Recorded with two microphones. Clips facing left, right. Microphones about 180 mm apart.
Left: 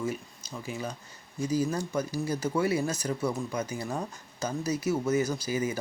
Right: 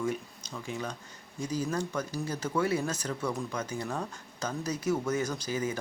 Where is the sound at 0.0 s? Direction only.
5° left (ahead or behind).